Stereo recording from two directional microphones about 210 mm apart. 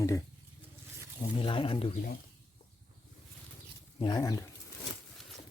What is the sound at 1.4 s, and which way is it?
Speech, 25° left (ahead or behind).